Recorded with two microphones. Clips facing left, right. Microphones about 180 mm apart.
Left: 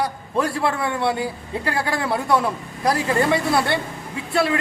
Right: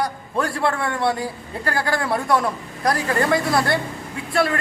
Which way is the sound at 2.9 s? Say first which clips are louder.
Left 1 dB; 25° left (ahead or behind).